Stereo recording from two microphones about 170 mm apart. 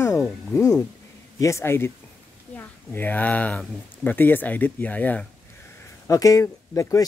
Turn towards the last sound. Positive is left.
turn(degrees=20)  # may be behind; listen again after turning